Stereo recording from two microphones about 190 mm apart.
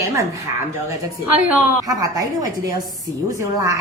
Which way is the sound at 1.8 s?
20° right (ahead or behind).